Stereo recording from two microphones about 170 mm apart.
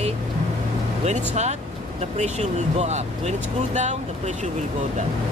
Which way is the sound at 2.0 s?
40° right (ahead or behind).